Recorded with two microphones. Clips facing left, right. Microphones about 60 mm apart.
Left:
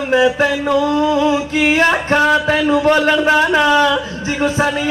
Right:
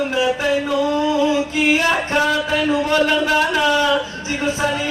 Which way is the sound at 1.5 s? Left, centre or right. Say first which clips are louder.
Left 3 dB; left.